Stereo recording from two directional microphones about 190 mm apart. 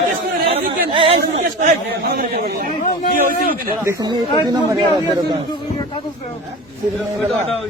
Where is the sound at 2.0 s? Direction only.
55° right (ahead or behind).